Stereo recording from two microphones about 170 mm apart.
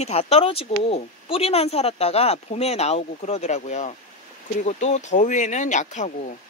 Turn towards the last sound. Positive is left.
turn(degrees=45)  # may be behind; listen again after turning